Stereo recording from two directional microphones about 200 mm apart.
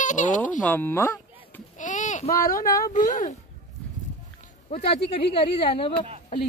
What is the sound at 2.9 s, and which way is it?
Speech, 40° left (ahead or behind).